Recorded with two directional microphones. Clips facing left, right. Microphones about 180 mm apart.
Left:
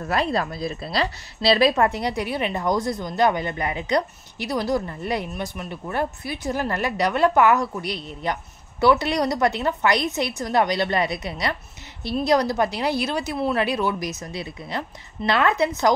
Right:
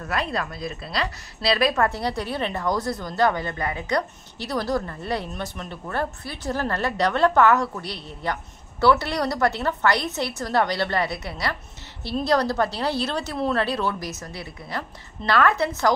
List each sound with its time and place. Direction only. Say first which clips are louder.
0.0 s a woman's voice: left 4 dB; 30° left (ahead or behind)